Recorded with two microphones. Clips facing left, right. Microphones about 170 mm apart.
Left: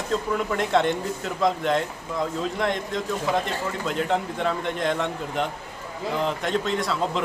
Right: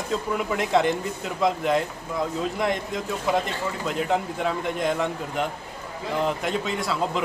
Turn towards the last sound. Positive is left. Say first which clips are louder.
# left 1 dB
turn(degrees=-5)  # may be behind; listen again after turning